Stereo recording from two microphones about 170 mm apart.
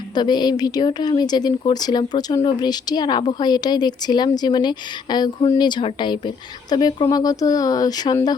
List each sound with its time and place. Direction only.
0.1 s a woman's voice: 25° left (ahead or behind)